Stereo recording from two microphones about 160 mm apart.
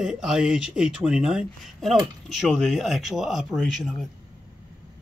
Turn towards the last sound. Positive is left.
turn(degrees=0)  # may be behind; listen again after turning